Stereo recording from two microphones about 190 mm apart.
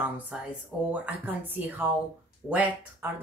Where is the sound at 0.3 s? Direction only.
5° right (ahead or behind).